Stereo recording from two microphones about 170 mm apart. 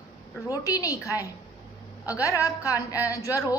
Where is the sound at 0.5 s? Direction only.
20° left (ahead or behind).